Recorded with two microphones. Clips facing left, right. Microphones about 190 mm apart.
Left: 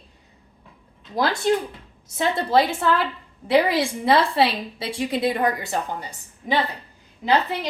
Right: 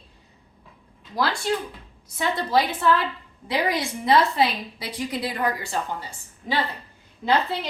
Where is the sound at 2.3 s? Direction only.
25° left (ahead or behind).